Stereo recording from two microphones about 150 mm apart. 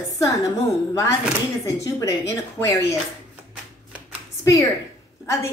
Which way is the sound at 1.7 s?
20° left (ahead or behind).